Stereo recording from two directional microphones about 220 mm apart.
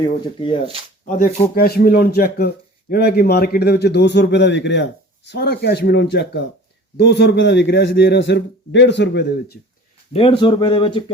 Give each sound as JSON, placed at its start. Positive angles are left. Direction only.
{"t": 0.0, "sound": "speech", "side_deg": 20}
{"t": 1.0, "sound": "a man's voice", "side_deg": 35}
{"t": 10.1, "sound": "speech", "side_deg": 25}